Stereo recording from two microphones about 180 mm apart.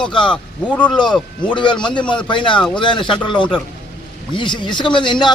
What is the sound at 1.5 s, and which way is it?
A man's voice, 25° left (ahead or behind).